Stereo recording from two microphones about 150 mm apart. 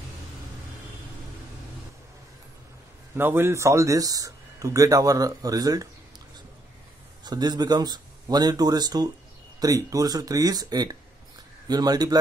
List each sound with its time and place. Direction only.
3.2 s speech: 15° right (ahead or behind)
7.2 s speech: 25° right (ahead or behind)